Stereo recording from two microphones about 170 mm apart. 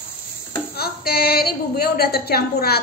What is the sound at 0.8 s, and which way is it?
A woman's voice, 65° left (ahead or behind).